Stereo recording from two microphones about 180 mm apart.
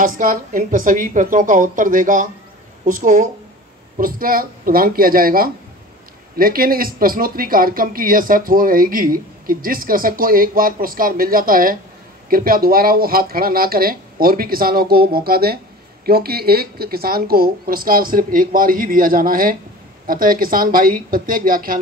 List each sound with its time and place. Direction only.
0.0 s speech: 50° right (ahead or behind)